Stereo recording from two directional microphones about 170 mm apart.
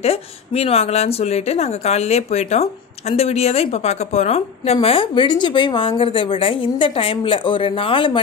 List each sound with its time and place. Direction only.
0.0 s a woman's voice: 35° left (ahead or behind)